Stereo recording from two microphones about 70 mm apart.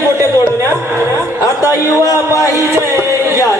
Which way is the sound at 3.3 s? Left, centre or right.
Left.